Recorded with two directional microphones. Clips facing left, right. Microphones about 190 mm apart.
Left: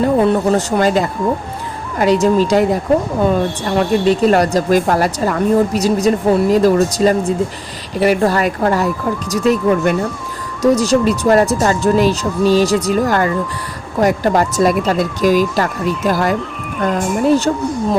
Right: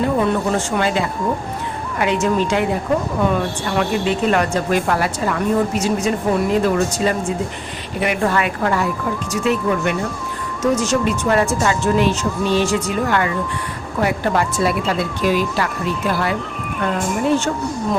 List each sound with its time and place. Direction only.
0.2 s a woman's voice: 40° left (ahead or behind)